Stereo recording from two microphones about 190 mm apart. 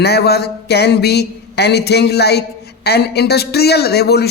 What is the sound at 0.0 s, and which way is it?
A man's voice, 60° left (ahead or behind).